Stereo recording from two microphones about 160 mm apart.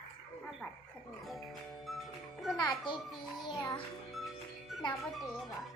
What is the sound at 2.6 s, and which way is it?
Music, 25° left (ahead or behind).